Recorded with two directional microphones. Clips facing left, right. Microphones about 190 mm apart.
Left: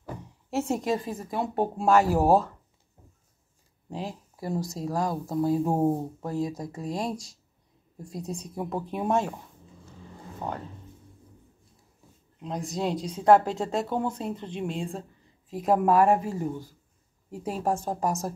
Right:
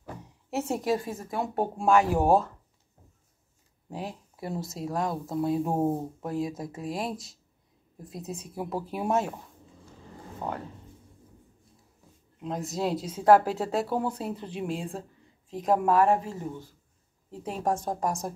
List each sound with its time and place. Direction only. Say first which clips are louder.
0.5 s speech: left 1 dB; 5° right (ahead or behind)
3.9 s speech: left 1 dB; centre (ahead or behind)
12.4 s speech: even; 5° right (ahead or behind)